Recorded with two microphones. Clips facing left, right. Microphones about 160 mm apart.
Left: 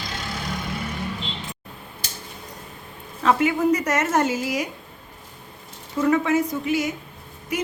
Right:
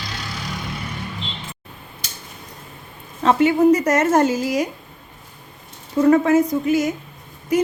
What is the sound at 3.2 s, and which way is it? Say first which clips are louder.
A woman's voice: right 5 dB; 30° right (ahead or behind).